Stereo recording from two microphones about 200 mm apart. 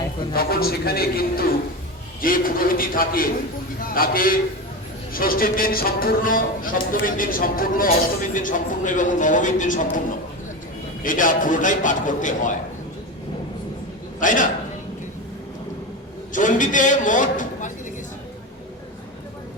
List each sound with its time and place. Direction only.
0.3 s speech: 50° left (ahead or behind)
11.0 s a man's voice: 45° left (ahead or behind)
14.2 s a man's voice: 40° left (ahead or behind)
16.3 s a man's voice: 40° left (ahead or behind)